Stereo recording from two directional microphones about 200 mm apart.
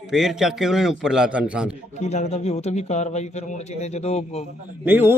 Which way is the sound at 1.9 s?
35° left (ahead or behind).